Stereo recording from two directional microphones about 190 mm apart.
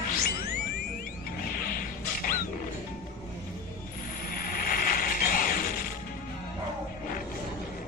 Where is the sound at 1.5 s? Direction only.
50° left (ahead or behind).